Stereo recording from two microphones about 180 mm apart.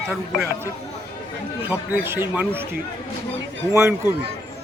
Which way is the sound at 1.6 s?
10° right (ahead or behind).